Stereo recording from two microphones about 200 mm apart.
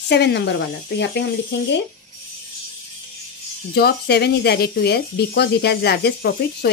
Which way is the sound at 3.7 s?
55° left (ahead or behind).